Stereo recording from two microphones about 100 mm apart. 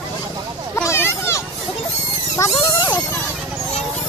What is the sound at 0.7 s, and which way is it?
Children playing, 25° left (ahead or behind).